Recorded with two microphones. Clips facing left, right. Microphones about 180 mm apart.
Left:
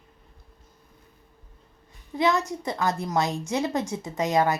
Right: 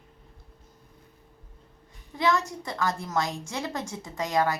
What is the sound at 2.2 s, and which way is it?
A woman's voice, 20° left (ahead or behind).